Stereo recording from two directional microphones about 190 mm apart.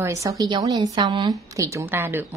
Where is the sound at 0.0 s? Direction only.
15° right (ahead or behind).